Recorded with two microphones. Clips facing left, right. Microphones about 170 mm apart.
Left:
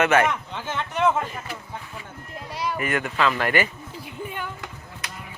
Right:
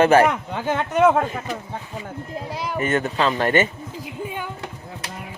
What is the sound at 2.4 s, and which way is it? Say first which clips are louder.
Speech: right 2 dB; 25° right (ahead or behind).